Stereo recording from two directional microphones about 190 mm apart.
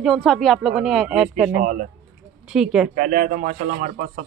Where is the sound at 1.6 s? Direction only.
45° right (ahead or behind).